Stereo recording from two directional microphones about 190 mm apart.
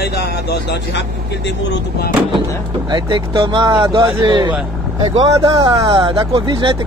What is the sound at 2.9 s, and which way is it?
Speech, 25° right (ahead or behind).